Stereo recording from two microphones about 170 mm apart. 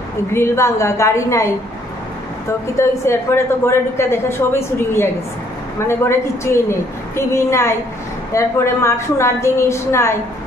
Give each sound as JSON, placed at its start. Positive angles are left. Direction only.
{"t": 0.3, "sound": "a woman's voice", "side_deg": 15}
{"t": 2.8, "sound": "a woman's voice", "side_deg": 15}